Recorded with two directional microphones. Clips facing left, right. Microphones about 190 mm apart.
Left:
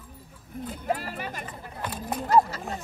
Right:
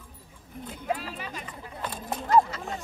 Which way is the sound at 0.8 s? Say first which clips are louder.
Left 1 dB; 50° left (ahead or behind).